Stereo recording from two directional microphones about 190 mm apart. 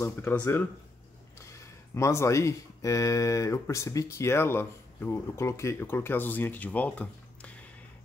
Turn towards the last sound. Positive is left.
turn(degrees=5)  # may be behind; listen again after turning